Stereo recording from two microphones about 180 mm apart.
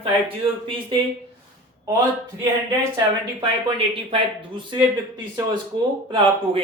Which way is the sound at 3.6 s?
30° right (ahead or behind).